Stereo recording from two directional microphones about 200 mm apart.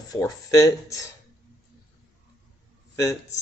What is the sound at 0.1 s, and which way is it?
Speech, 15° left (ahead or behind).